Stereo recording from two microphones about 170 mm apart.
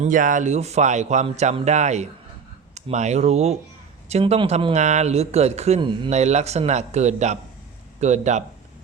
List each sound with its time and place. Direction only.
0.0 s a man's voice: 50° right (ahead or behind)